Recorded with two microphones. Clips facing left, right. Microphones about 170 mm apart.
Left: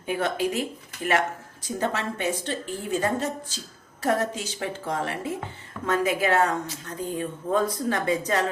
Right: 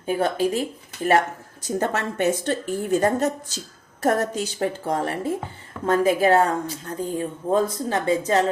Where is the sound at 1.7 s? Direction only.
45° right (ahead or behind).